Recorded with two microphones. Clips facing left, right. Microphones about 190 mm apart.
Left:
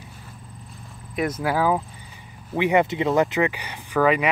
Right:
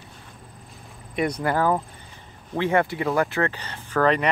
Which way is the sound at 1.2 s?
5° left (ahead or behind).